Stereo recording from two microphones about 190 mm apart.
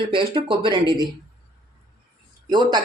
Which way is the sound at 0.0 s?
25° right (ahead or behind).